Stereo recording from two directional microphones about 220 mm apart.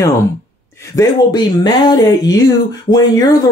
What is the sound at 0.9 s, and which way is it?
Speech, 20° left (ahead or behind).